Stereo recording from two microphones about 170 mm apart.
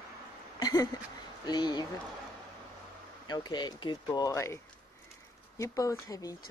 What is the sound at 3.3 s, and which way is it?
Speech, 25° left (ahead or behind).